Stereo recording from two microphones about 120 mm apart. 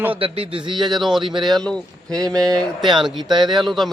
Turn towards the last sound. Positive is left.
turn(degrees=-35)  # may be behind; listen again after turning